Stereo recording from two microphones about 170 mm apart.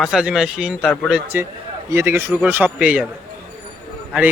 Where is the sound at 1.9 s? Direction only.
15° right (ahead or behind).